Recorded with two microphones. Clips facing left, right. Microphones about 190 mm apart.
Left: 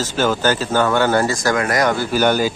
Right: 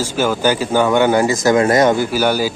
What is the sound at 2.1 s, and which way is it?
Speech, 10° right (ahead or behind).